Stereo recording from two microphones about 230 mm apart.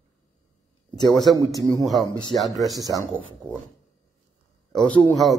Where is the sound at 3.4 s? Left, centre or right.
Centre.